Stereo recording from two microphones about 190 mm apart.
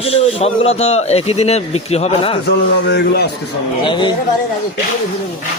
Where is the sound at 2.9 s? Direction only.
60° left (ahead or behind).